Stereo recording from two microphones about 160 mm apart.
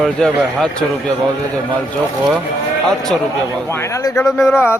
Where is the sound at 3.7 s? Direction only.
15° left (ahead or behind).